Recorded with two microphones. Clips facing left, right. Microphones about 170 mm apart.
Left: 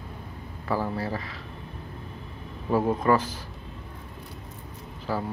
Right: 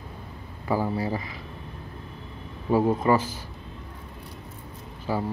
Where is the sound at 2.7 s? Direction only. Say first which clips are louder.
Right 1 dB; 10° right (ahead or behind).